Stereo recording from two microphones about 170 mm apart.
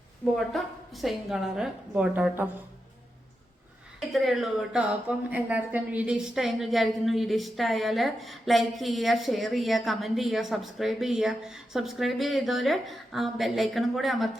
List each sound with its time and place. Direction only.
0.3 s speech: centre (ahead or behind)
4.1 s speech: centre (ahead or behind)